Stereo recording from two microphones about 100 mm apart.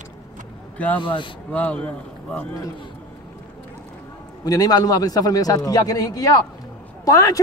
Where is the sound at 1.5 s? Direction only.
15° left (ahead or behind).